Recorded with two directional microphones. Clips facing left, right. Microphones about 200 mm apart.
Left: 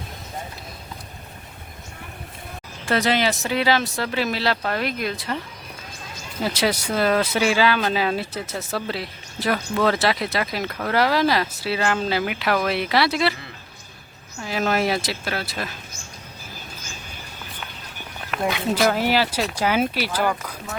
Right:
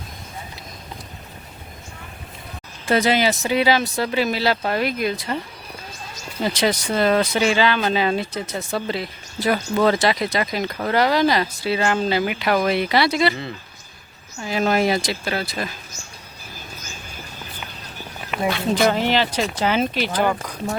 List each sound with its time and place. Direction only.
2.8 s speech: centre (ahead or behind)
6.4 s speech: 5° left (ahead or behind)
14.4 s speech: centre (ahead or behind)
18.4 s speech: 15° left (ahead or behind)